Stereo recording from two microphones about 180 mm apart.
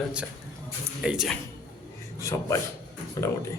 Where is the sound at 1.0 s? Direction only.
5° right (ahead or behind).